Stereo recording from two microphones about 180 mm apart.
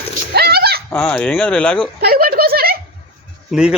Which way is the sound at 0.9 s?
5° left (ahead or behind).